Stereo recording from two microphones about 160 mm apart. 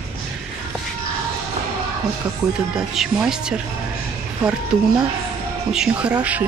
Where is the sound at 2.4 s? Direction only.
20° right (ahead or behind).